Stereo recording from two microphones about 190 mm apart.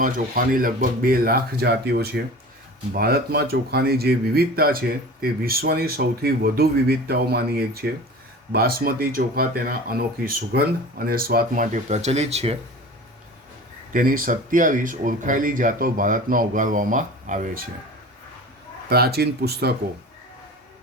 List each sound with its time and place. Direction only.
0.0 s speech: 45° right (ahead or behind)
13.9 s speech: 45° right (ahead or behind)
18.9 s speech: 55° right (ahead or behind)